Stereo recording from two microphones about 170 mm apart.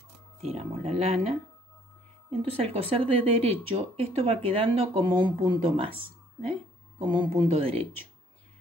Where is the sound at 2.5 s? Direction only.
35° right (ahead or behind).